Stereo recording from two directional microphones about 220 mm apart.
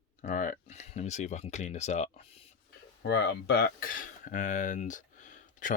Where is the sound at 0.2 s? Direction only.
35° left (ahead or behind).